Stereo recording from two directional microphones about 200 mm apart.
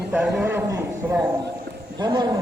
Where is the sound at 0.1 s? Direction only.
5° right (ahead or behind).